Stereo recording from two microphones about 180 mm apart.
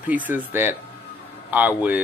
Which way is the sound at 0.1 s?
10° right (ahead or behind).